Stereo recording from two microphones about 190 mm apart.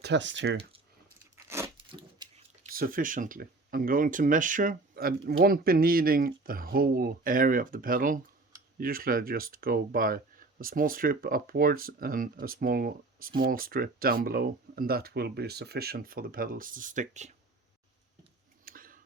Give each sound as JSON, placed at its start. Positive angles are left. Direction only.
{"t": 0.0, "sound": "speech", "side_deg": -70}
{"t": 1.5, "sound": "a sound", "side_deg": -15}
{"t": 2.7, "sound": "speech", "side_deg": -50}
{"t": 18.6, "sound": "tick", "side_deg": -50}